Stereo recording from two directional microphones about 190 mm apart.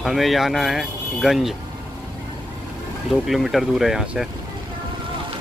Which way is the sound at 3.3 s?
Centre (ahead or behind).